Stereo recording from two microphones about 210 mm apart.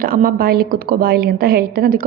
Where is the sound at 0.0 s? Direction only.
45° right (ahead or behind).